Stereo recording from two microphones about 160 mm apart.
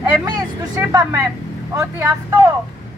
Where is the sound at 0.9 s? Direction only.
20° right (ahead or behind).